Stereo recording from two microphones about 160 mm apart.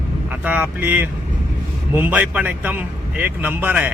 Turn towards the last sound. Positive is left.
turn(degrees=-10)  # may be behind; listen again after turning